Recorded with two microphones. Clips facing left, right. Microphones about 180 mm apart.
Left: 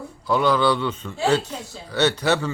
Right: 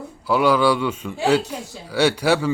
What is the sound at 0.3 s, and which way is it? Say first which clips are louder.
A man's voice: right 2 dB; 10° right (ahead or behind).